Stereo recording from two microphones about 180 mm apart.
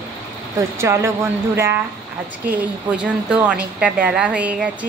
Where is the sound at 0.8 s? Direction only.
15° right (ahead or behind).